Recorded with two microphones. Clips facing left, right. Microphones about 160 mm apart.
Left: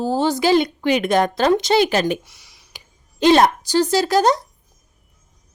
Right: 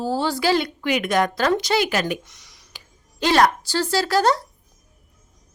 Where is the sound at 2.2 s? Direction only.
5° left (ahead or behind).